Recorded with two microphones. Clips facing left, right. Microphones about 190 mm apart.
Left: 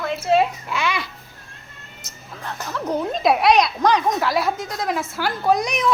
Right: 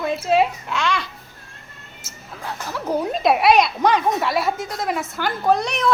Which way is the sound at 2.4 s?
5° right (ahead or behind).